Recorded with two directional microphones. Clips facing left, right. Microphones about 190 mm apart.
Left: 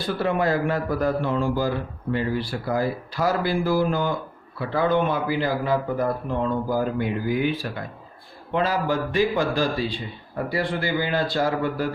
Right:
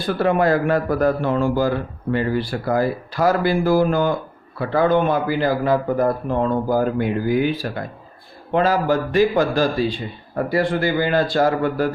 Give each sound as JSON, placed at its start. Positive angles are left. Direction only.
{"t": 0.0, "sound": "a man's voice", "side_deg": -55}